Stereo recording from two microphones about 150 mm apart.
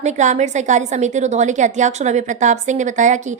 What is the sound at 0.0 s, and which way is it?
A woman's voice, 50° right (ahead or behind).